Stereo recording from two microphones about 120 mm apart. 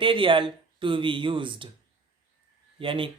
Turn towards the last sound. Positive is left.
turn(degrees=-45)  # may be behind; listen again after turning